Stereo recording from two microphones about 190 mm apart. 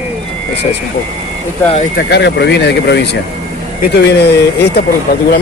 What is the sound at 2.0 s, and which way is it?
Speech, 60° left (ahead or behind).